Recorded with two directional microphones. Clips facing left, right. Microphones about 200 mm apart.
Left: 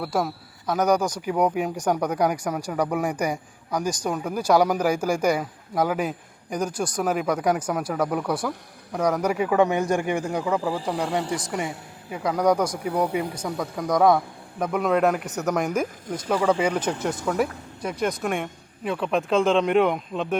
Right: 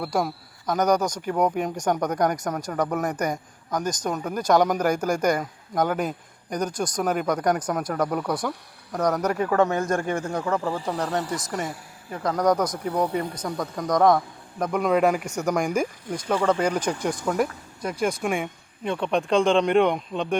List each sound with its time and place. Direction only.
0.0 s speech: 5° left (ahead or behind)
10.6 s speech: centre (ahead or behind)
11.3 s a man's voice: 30° left (ahead or behind)
12.1 s speech: 10° left (ahead or behind)